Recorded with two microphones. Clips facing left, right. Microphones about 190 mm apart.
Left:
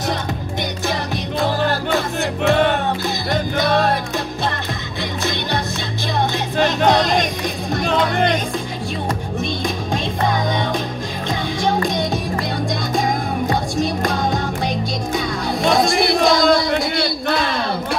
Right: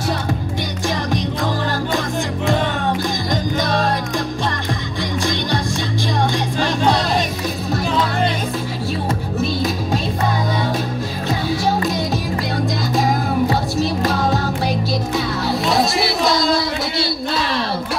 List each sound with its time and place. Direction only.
2.4 s music: 65° left (ahead or behind)
7.9 s music: 60° left (ahead or behind)
11.2 s music: 5° right (ahead or behind)
15.6 s a sound: 50° left (ahead or behind)